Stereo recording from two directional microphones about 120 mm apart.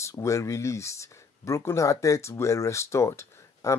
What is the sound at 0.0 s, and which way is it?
Speech, 25° left (ahead or behind).